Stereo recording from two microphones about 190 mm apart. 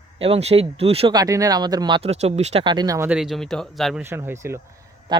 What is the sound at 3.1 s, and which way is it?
Speech, 5° right (ahead or behind).